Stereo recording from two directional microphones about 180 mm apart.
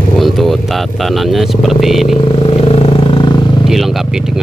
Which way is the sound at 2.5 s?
30° left (ahead or behind).